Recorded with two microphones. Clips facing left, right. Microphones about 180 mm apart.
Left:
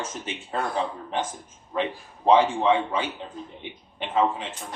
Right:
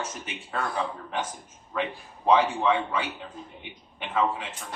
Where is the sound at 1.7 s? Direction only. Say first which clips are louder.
Left 3 dB; 25° left (ahead or behind).